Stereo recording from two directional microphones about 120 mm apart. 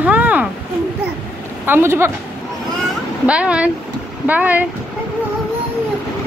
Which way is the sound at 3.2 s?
10° right (ahead or behind).